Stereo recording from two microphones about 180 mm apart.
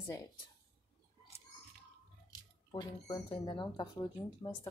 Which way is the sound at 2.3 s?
25° left (ahead or behind).